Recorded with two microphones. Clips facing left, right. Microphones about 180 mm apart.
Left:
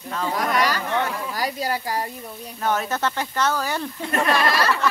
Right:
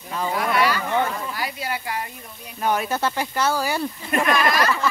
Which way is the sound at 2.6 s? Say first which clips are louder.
Right 1 dB; 10° right (ahead or behind).